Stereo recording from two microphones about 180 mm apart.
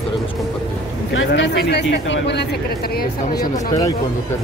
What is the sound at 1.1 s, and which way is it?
Speech, 85° left.